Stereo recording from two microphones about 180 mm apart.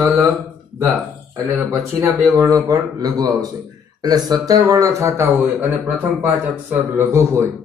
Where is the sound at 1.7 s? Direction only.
20° right (ahead or behind).